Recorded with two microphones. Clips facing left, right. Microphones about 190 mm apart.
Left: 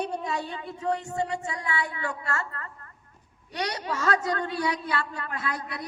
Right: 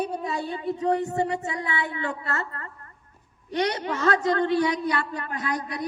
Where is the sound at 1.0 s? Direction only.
20° right (ahead or behind).